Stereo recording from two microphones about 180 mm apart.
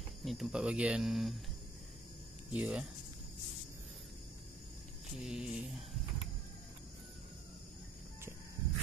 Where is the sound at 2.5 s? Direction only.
5° right (ahead or behind).